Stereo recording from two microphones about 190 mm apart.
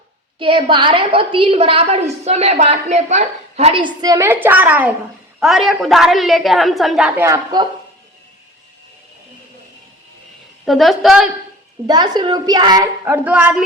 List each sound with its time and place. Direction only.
0.3 s a woman's voice: 25° right (ahead or behind); by 7.1 s centre (ahead or behind)
7.2 s a woman's voice: 20° right (ahead or behind)
10.7 s a woman's voice: centre (ahead or behind)
11.9 s a woman's voice: 20° right (ahead or behind)